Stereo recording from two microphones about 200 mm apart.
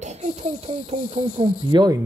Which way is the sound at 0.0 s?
35° right (ahead or behind).